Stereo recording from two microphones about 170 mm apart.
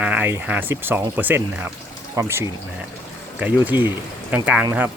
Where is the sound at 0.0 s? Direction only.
10° right (ahead or behind).